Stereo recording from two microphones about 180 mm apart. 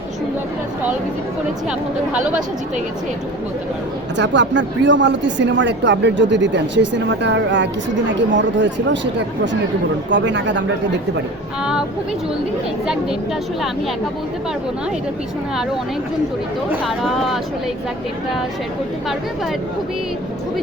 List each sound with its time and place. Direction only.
4.2 s speech: 85° right
10.1 s speech: 85° right
11.6 s speech: 5° right (ahead or behind)
16.8 s speech: centre (ahead or behind)